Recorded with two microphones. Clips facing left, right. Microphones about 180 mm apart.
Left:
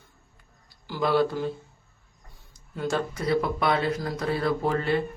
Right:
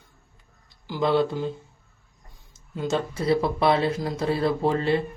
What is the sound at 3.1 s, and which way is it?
Speech, 30° right (ahead or behind).